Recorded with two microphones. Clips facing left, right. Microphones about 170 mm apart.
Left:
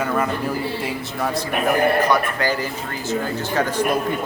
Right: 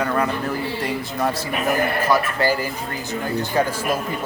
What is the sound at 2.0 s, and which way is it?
Speech, 5° right (ahead or behind).